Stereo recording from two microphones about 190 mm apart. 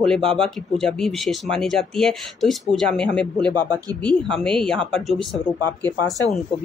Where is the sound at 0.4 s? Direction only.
Centre (ahead or behind).